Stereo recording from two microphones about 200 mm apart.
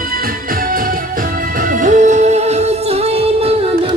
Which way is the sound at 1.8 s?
40° right (ahead or behind).